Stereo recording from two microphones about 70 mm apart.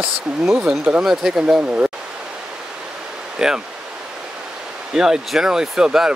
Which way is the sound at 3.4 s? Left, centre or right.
Centre.